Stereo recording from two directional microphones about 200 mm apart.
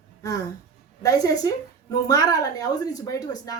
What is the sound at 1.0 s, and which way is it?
Speech, 15° left (ahead or behind).